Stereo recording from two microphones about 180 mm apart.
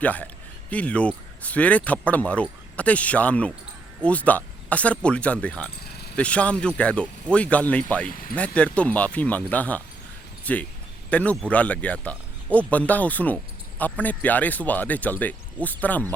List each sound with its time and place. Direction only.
0.0 s speech: 10° left (ahead or behind)
5.8 s a sound: 60° left (ahead or behind)
6.1 s speech: 5° left (ahead or behind)
8.1 s speech: 50° left (ahead or behind)
8.4 s speech: 5° left (ahead or behind)